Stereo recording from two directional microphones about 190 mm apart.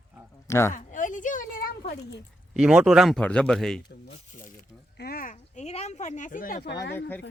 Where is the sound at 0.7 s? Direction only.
45° left (ahead or behind).